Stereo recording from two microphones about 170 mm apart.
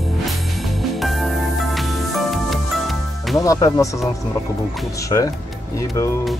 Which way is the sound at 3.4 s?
20° left (ahead or behind).